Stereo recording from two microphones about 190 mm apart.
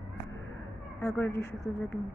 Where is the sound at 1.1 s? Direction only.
10° left (ahead or behind).